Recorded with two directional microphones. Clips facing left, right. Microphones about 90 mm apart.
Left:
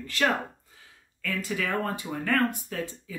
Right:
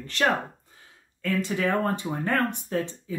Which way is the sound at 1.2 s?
35° right (ahead or behind).